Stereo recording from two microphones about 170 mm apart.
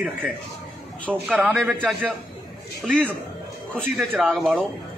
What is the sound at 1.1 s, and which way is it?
A man's voice, 5° left (ahead or behind).